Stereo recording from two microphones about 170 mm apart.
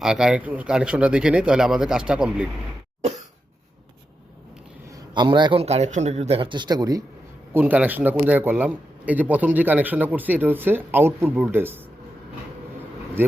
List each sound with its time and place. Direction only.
0.0 s speech: 5° right (ahead or behind)
4.9 s a man's voice: 25° right (ahead or behind)
7.5 s speech: 10° right (ahead or behind)